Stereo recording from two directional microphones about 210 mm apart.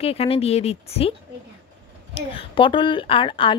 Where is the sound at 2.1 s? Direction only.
25° left (ahead or behind).